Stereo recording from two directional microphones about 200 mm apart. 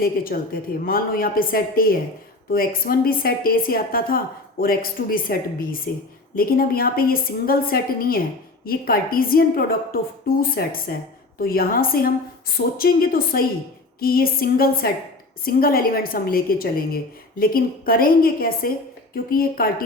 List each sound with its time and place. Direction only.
0.0 s a woman's voice: 45° left (ahead or behind)